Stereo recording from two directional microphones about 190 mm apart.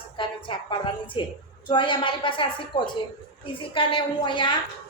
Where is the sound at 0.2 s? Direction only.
25° left (ahead or behind).